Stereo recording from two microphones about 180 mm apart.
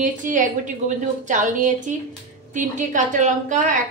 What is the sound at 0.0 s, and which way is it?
A woman's voice, 45° right (ahead or behind).